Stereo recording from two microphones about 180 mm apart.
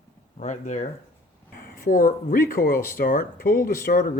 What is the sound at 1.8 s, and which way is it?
Speech, 50° left (ahead or behind).